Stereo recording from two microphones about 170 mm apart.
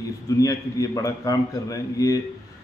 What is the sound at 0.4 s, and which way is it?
A man's voice, 20° left (ahead or behind).